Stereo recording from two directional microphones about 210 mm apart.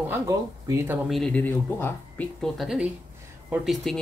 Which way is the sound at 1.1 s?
5° left (ahead or behind).